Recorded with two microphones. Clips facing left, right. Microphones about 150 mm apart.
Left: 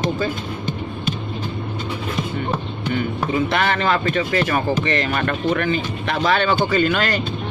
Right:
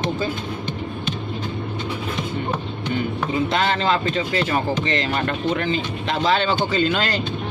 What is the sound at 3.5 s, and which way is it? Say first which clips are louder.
Speech: right 1 dB; 25° right (ahead or behind).